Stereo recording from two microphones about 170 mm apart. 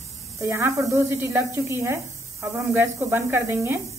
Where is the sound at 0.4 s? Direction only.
15° right (ahead or behind).